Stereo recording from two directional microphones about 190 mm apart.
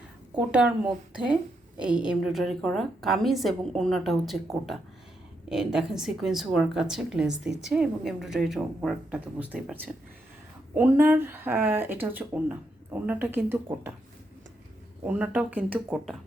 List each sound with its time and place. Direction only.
0.3 s a woman's voice: 5° right (ahead or behind)
10.8 s speech: 10° right (ahead or behind)
15.0 s speech: 5° right (ahead or behind)